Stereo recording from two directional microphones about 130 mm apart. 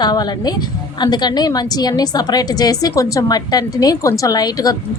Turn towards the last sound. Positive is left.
turn(degrees=30)  # may be behind; listen again after turning